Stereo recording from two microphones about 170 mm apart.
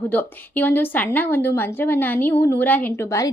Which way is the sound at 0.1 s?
10° left (ahead or behind).